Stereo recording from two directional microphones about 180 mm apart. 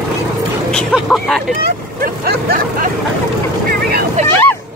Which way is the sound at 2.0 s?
55° right (ahead or behind).